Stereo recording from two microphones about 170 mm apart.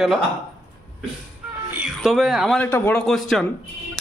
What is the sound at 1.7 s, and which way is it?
Speech, 5° right (ahead or behind).